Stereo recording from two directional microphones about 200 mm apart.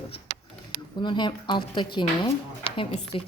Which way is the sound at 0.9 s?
20° left (ahead or behind).